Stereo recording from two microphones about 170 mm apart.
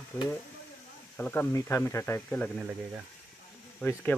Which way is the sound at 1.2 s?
10° left (ahead or behind).